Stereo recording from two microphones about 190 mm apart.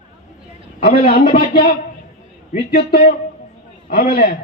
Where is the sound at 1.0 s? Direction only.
50° left (ahead or behind).